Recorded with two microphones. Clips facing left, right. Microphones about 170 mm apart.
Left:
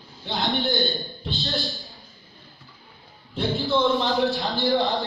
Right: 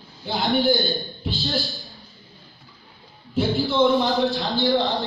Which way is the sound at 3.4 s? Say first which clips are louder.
Right 3 dB; centre (ahead or behind).